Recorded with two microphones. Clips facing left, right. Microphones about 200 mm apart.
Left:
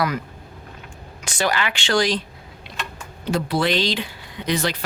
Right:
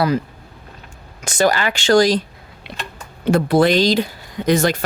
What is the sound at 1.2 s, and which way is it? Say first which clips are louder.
Speech: right 6 dB; 45° right (ahead or behind).